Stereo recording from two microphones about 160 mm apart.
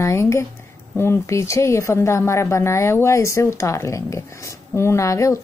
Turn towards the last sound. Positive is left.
turn(degrees=20)  # may be behind; listen again after turning